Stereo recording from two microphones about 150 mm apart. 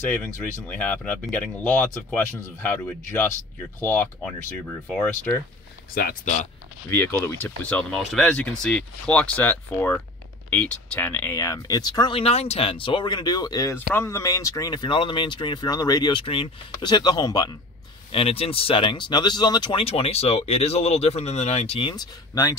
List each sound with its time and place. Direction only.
0.1 s speech: 10° left (ahead or behind)
5.9 s speech: 65° left (ahead or behind)
6.9 s speech: 20° left (ahead or behind)
11.3 s speech: 20° left (ahead or behind)
18.1 s speech: 40° left (ahead or behind)